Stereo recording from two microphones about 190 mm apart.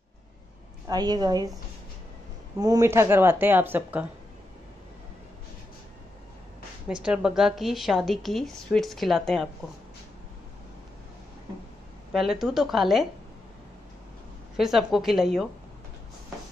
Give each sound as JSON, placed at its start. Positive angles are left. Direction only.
{"t": 0.8, "sound": "a woman's voice", "side_deg": -20}
{"t": 2.6, "sound": "a woman's voice", "side_deg": -15}
{"t": 6.9, "sound": "a woman's voice", "side_deg": -5}
{"t": 12.1, "sound": "a woman's voice", "side_deg": 0}
{"t": 14.6, "sound": "a woman's voice", "side_deg": 0}